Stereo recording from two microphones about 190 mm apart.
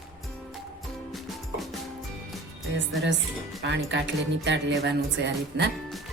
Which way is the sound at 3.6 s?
70° right (ahead or behind).